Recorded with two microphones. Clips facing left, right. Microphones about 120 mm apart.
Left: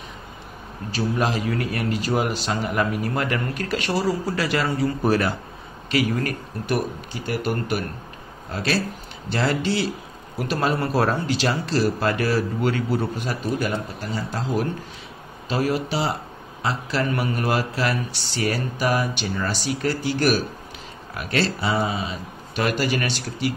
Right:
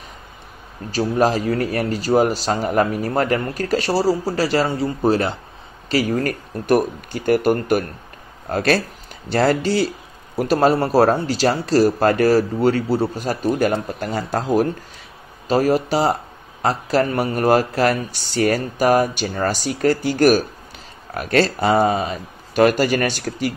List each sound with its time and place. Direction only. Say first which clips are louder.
0.9 s a man's voice: right 6 dB; 40° right (ahead or behind)